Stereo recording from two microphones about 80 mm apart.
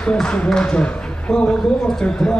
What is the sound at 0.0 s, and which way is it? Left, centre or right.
A man's voice, centre.